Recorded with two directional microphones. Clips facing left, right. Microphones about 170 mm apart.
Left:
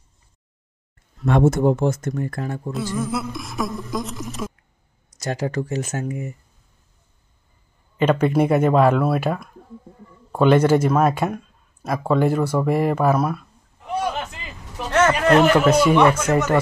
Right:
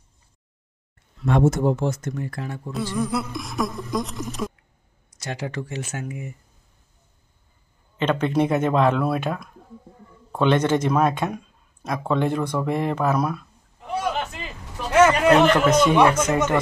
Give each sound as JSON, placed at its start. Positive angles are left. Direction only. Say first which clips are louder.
{"t": 1.2, "sound": "speech", "louder": "left 2 dB", "side_deg": 55}
{"t": 2.7, "sound": "speech", "louder": "right 1 dB", "side_deg": 0}
{"t": 5.1, "sound": "speech", "louder": "left 6 dB", "side_deg": 40}
{"t": 8.0, "sound": "speech", "louder": "left 3 dB", "side_deg": 10}
{"t": 14.9, "sound": "a sound", "louder": "right 2 dB", "side_deg": -10}
{"t": 15.4, "sound": "speech", "louder": "left 2 dB", "side_deg": 10}